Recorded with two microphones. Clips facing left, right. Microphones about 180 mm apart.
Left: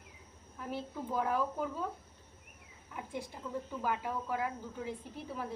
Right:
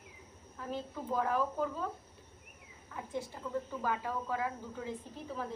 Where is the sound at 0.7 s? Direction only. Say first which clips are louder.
Right 1 dB; 15° left (ahead or behind).